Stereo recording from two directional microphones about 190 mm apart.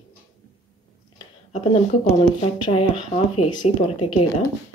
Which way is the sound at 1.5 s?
30° left (ahead or behind).